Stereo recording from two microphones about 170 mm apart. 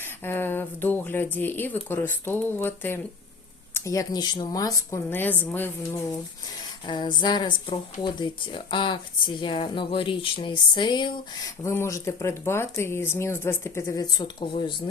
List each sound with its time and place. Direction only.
0.0 s speech: 10° left (ahead or behind)
6.8 s speech: 25° left (ahead or behind)
11.6 s speech: 15° left (ahead or behind)